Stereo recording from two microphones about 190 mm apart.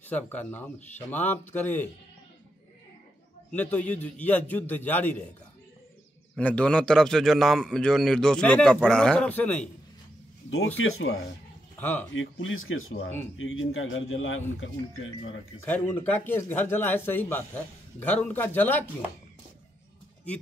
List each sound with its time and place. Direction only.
0.0 s speech: 10° left (ahead or behind)
3.5 s speech: 10° left (ahead or behind)
6.3 s a man's voice: 5° left (ahead or behind)
10.8 s speech: 90° left
15.6 s speech: 10° left (ahead or behind)